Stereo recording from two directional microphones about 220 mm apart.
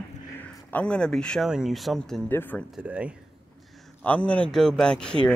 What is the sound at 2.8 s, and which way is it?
Speech, 5° right (ahead or behind).